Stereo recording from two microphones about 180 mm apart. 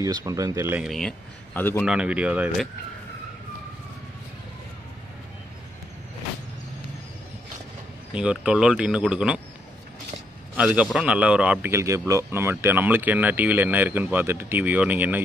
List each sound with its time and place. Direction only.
0.0 s speech: 20° right (ahead or behind)
0.8 s speech: 5° left (ahead or behind)
1.9 s speech: 5° right (ahead or behind)
8.1 s speech: 5° right (ahead or behind)
10.5 s speech: 5° right (ahead or behind)